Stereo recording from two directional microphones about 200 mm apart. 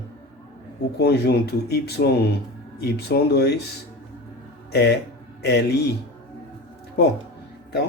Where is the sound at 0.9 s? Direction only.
55° left (ahead or behind).